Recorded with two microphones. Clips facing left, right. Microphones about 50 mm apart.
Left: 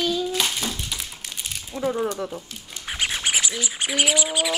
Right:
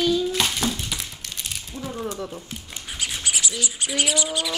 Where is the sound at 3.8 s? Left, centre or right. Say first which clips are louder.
Left 2 dB; left.